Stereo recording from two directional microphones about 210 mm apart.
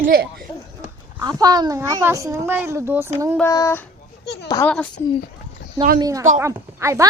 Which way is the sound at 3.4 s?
15° left (ahead or behind).